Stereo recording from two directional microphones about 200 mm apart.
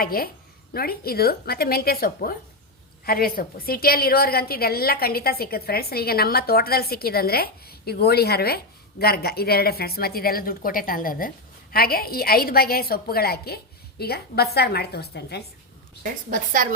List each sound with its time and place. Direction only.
0.0 s a woman's voice: 50° left (ahead or behind)
16.3 s a woman's voice: 45° right (ahead or behind)